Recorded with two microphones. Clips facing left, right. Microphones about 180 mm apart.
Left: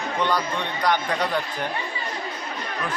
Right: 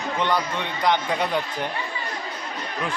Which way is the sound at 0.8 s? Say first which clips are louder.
Right 1 dB; 20° right (ahead or behind).